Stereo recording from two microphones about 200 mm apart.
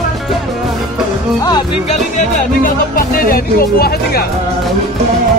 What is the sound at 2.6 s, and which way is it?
Music, 45° left (ahead or behind).